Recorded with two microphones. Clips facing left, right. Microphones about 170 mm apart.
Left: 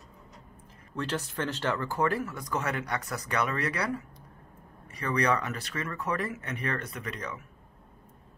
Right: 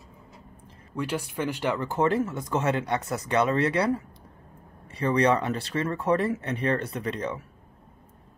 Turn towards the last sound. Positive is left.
turn(degrees=-30)  # may be behind; listen again after turning